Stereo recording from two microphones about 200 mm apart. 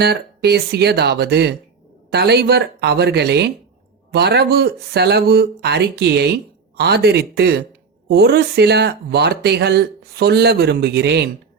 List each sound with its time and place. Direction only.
0.0 s speech: 55° right (ahead or behind)